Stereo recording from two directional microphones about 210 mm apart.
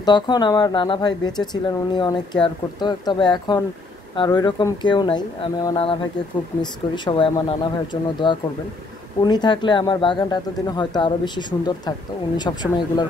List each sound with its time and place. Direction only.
0.0 s speech: 20° left (ahead or behind)